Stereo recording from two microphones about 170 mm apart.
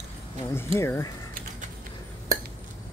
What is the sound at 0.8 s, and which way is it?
Speech, 15° left (ahead or behind).